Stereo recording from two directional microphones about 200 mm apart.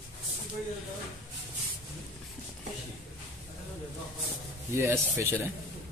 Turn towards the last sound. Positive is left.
turn(degrees=-10)  # may be behind; listen again after turning